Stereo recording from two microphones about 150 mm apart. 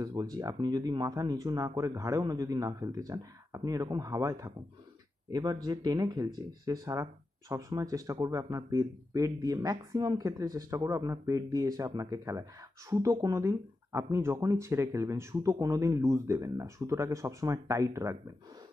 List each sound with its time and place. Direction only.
0.0 s speech: 25° right (ahead or behind)